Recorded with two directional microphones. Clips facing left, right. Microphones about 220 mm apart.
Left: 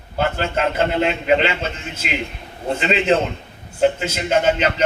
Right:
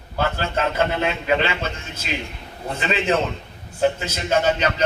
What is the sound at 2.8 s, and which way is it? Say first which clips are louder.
A man's voice: left 3 dB; 25° left (ahead or behind).